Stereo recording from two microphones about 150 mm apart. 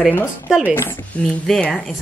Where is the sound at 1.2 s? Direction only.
5° left (ahead or behind).